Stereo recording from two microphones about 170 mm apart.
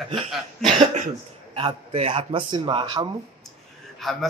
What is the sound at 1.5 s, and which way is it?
A man's voice, 35° right (ahead or behind).